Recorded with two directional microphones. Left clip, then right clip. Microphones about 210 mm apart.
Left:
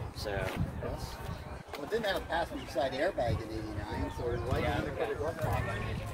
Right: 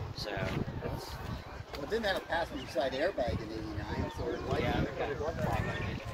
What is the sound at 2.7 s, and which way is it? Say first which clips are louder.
Speech: even; 25° right (ahead or behind).